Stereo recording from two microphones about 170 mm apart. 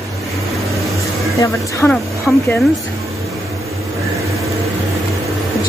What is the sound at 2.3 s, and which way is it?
Speech, centre (ahead or behind).